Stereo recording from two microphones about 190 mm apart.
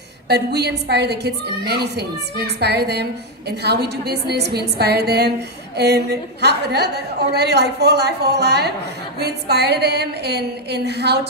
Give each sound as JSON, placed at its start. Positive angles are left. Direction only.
{"t": 0.3, "sound": "a woman's voice", "side_deg": -60}